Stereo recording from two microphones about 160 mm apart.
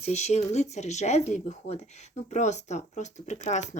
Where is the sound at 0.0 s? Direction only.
45° left (ahead or behind).